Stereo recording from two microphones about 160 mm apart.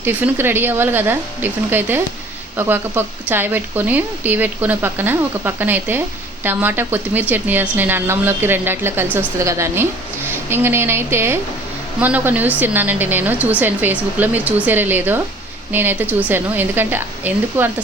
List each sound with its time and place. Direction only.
0.0 s a woman's voice: 10° right (ahead or behind)